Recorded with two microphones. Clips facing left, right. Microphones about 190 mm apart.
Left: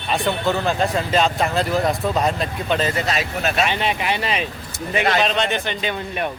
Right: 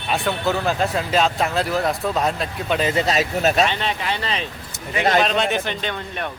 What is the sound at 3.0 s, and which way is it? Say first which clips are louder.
Speech: right 3 dB; 40° right (ahead or behind).